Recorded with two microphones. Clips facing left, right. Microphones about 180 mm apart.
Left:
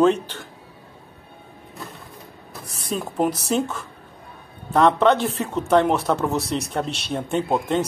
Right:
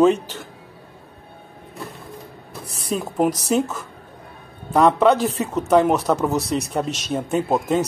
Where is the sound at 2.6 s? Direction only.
30° right (ahead or behind).